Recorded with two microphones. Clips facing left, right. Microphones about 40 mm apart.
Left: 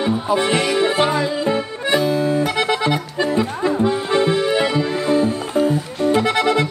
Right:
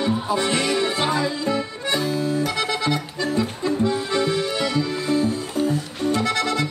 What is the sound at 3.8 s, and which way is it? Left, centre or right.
Accordion, left.